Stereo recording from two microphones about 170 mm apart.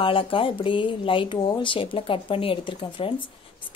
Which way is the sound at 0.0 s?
30° left (ahead or behind).